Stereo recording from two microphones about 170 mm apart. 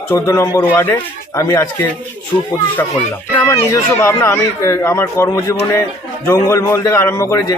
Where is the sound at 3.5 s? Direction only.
15° left (ahead or behind).